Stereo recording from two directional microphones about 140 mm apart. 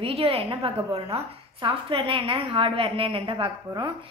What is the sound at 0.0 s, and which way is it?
A woman's voice, 45° right (ahead or behind).